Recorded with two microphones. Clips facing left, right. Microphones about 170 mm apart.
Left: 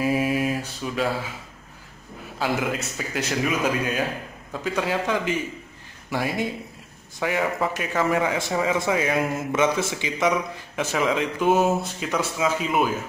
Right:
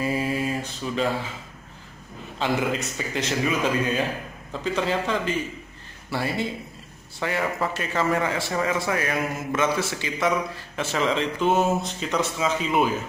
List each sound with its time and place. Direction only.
0.0 s mantra: 10° left (ahead or behind)
2.3 s a man's voice: 5° left (ahead or behind)